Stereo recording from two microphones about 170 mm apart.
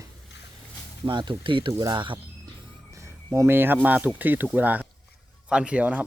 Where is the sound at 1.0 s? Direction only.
25° right (ahead or behind).